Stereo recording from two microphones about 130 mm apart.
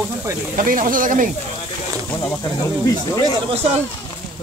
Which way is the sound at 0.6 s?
90° right.